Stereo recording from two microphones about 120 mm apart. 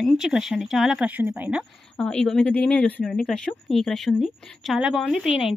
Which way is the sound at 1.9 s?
10° left (ahead or behind).